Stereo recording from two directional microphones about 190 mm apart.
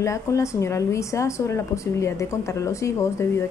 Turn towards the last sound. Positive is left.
turn(degrees=15)  # may be behind; listen again after turning